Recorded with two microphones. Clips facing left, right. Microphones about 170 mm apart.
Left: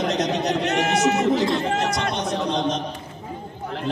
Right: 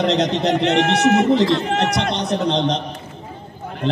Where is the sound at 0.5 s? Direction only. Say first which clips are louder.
Right 5 dB; 65° right (ahead or behind).